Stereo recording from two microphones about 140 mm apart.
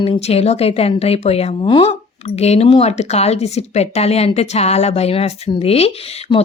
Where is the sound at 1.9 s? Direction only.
50° left (ahead or behind).